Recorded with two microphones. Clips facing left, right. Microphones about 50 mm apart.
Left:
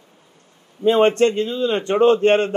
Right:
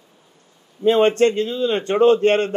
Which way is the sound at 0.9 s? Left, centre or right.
Left.